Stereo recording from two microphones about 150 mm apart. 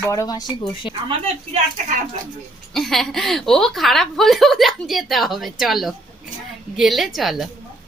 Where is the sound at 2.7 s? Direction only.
Centre (ahead or behind).